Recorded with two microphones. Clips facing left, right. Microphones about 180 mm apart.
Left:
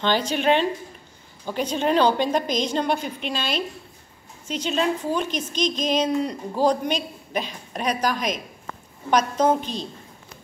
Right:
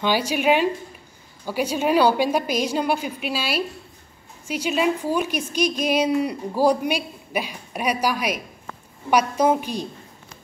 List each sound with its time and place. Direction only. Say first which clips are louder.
0.0 s a woman's voice: right 1 dB; 10° right (ahead or behind)